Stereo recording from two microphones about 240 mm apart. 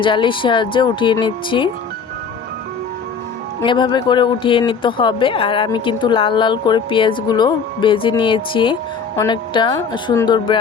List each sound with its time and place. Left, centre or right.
0.0 s speech: left
3.6 s speech: centre